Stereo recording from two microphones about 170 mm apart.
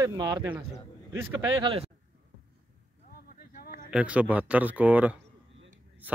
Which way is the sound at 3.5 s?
60° left (ahead or behind).